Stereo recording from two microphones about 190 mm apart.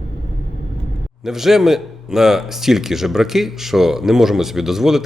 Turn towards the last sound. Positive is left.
turn(degrees=0)  # may be behind; listen again after turning